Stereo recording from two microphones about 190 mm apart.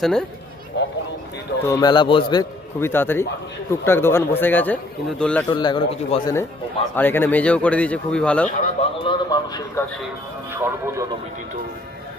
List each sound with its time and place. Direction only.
0.0 s speech: 5° left (ahead or behind)
0.7 s speech: 65° left (ahead or behind)
1.6 s a man's voice: 20° left (ahead or behind)
5.5 s a man's voice: 25° left (ahead or behind)
6.9 s a man's voice: 10° left (ahead or behind)
9.0 s a man's voice: 20° left (ahead or behind)
10.5 s speech: 10° right (ahead or behind)